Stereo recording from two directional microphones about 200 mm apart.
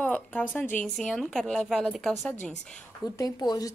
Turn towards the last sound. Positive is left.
turn(degrees=20)  # may be behind; listen again after turning